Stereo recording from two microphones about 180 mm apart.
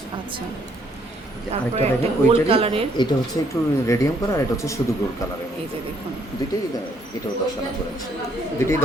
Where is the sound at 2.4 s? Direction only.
30° right (ahead or behind).